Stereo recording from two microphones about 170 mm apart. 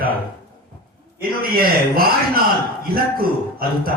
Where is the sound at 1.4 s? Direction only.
60° right (ahead or behind).